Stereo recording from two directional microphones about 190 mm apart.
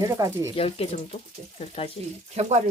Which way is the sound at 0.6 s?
30° left (ahead or behind).